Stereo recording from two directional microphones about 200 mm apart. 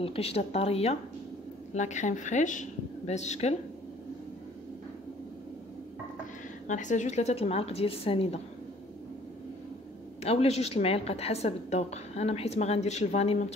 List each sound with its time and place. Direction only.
0.0 s speech: 30° left (ahead or behind)
6.7 s a woman's voice: 40° left (ahead or behind)
10.2 s a woman's voice: 30° left (ahead or behind)